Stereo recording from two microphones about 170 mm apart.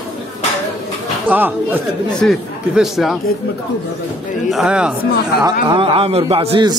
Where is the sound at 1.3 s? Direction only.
10° right (ahead or behind).